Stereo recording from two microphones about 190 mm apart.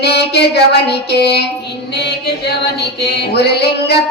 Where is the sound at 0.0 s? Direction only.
60° left (ahead or behind).